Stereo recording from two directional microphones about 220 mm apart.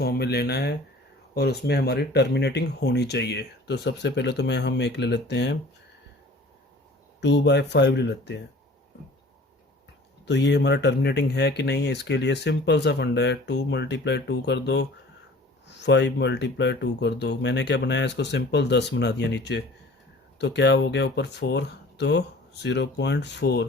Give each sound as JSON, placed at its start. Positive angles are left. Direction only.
{"t": 0.0, "sound": "speech", "side_deg": 45}
{"t": 7.2, "sound": "speech", "side_deg": 50}
{"t": 10.2, "sound": "speech", "side_deg": 50}